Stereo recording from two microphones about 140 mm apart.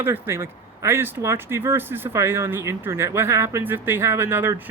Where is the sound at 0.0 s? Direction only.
15° right (ahead or behind).